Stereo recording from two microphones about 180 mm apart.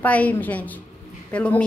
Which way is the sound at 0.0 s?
10° left (ahead or behind).